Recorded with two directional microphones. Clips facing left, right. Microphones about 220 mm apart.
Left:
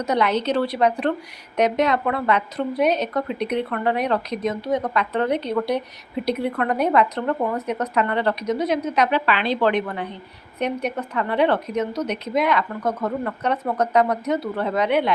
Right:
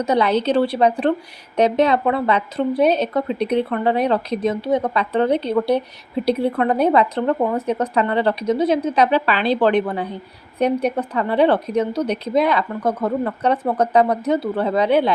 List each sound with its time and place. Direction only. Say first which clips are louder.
0.0 s a woman's voice: right 3 dB; 30° right (ahead or behind)